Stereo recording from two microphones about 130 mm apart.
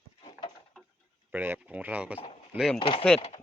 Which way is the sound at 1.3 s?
10° right (ahead or behind).